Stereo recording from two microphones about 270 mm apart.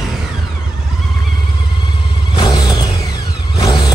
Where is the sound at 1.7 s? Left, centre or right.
Centre.